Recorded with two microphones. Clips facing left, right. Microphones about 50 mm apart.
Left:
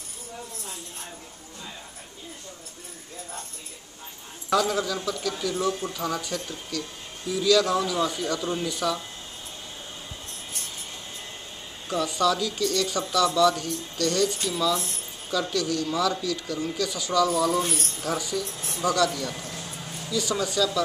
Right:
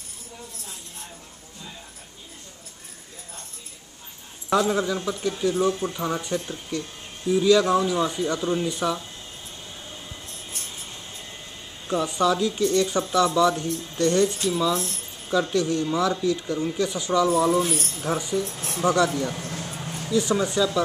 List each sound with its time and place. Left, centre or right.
4.5 s speech: right
11.9 s speech: right
14.5 s speech: centre
15.5 s speech: right
17.6 s speech: centre
18.0 s speech: right
19.4 s a sound: right
20.1 s speech: right